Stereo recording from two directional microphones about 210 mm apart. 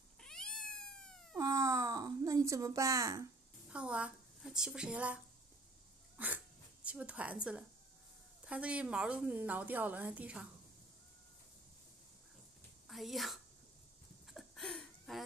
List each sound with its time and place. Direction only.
0.2 s cat: 5° left (ahead or behind)
1.3 s cat: 15° right (ahead or behind)
3.7 s a woman's voice: 5° right (ahead or behind)
12.8 s speech: centre (ahead or behind)
14.2 s a sound: centre (ahead or behind)